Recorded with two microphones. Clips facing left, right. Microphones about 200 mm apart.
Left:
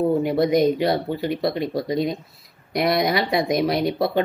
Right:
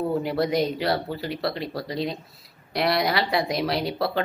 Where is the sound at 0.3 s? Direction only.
20° left (ahead or behind).